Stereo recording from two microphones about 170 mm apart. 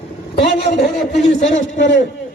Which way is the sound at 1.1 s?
40° left (ahead or behind).